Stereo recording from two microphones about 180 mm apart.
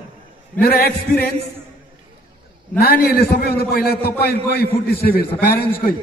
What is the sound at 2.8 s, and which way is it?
A man's voice, 60° left (ahead or behind).